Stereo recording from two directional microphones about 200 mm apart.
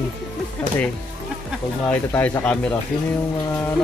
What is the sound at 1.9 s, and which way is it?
Speech, 10° left (ahead or behind).